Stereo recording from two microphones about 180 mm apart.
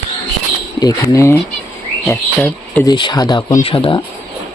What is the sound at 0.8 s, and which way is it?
Speech, 20° left (ahead or behind).